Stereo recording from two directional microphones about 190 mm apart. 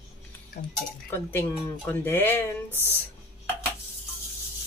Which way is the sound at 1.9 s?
10° left (ahead or behind).